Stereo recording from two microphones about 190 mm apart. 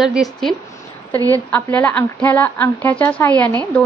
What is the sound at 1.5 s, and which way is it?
A woman's voice, 10° left (ahead or behind).